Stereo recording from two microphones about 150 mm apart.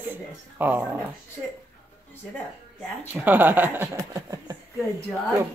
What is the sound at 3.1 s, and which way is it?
Speech, 10° right (ahead or behind).